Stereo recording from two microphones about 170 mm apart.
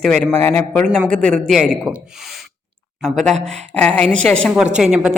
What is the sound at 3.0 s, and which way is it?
Speech, centre (ahead or behind).